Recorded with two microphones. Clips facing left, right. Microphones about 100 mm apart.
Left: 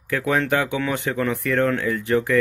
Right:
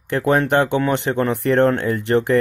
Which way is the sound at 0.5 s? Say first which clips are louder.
Right 5 dB; 60° right (ahead or behind).